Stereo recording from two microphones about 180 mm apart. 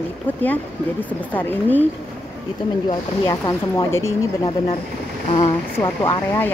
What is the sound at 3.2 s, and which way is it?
Speech, 25° left (ahead or behind).